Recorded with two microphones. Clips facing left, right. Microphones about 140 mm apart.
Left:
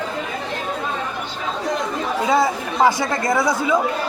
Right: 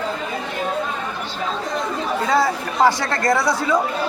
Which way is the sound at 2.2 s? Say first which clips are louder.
Left 1 dB; 15° left (ahead or behind).